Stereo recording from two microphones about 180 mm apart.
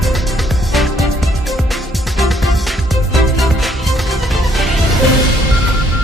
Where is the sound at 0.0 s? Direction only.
Centre (ahead or behind).